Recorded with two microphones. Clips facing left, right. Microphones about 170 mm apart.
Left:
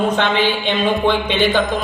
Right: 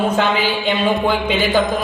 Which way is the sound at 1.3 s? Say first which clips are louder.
Even; centre (ahead or behind).